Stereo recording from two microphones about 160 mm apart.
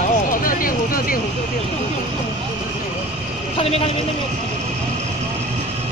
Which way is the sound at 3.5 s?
40° left (ahead or behind).